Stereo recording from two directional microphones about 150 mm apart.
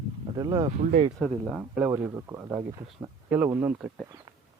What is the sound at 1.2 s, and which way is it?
Speech, 5° left (ahead or behind).